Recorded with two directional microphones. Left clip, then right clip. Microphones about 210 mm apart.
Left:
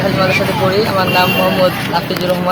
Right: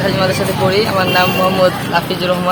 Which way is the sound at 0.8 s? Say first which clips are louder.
Even; 5° right (ahead or behind).